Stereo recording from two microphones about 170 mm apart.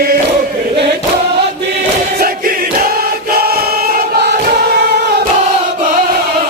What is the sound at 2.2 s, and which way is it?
Choir, 60° right (ahead or behind).